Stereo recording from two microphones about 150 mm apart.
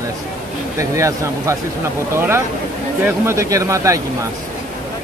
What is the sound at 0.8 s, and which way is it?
Speech, 20° right (ahead or behind).